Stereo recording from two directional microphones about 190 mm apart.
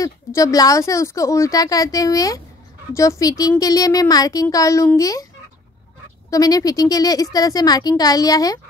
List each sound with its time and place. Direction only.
0.0 s a child's voice: 20° left (ahead or behind)
6.3 s a child's voice: 20° left (ahead or behind)